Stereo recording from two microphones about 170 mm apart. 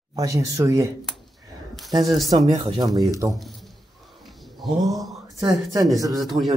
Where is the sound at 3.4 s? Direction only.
Centre (ahead or behind).